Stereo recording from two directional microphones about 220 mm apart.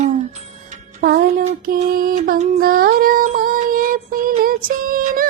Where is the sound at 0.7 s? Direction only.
40° right (ahead or behind).